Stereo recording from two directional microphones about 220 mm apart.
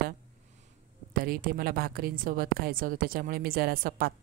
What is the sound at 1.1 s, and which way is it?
A woman's voice, 40° right (ahead or behind).